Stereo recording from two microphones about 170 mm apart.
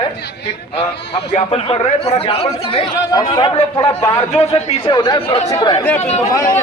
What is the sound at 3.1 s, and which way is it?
A man's voice, 20° left (ahead or behind).